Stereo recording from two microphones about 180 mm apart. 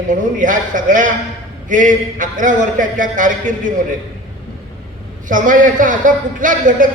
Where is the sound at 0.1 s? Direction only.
45° right (ahead or behind).